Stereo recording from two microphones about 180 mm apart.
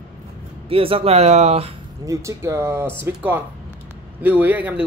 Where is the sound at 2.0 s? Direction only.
15° right (ahead or behind).